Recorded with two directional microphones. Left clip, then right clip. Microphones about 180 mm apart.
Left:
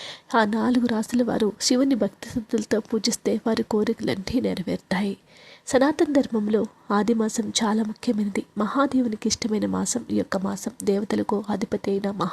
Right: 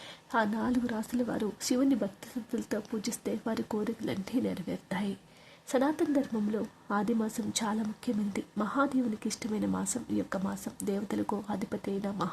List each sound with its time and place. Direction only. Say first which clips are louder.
0.3 s a woman's voice: left 9 dB; 30° left (ahead or behind)